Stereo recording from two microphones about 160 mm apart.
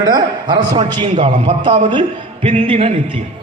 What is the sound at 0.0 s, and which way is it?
A man's voice, 25° right (ahead or behind).